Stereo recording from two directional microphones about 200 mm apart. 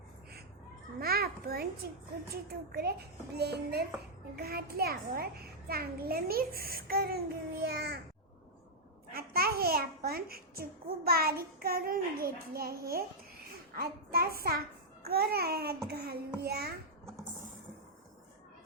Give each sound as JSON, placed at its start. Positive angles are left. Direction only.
{"t": 0.9, "sound": "children playing", "side_deg": -50}
{"t": 1.8, "sound": "a child's voice", "side_deg": -50}
{"t": 9.1, "sound": "a child's voice", "side_deg": -50}